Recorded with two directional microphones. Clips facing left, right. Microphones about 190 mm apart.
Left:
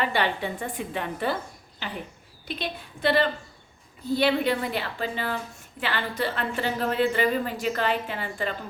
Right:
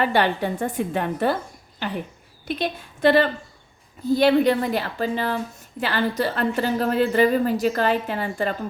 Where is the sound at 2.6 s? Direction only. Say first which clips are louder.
Right 7 dB; 45° right (ahead or behind).